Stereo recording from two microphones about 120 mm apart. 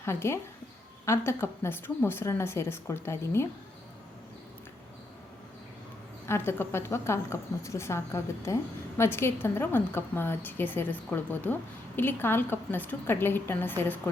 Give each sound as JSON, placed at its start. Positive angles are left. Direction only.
{"t": 0.0, "sound": "a woman's voice", "side_deg": 20}
{"t": 6.2, "sound": "a woman's voice", "side_deg": 20}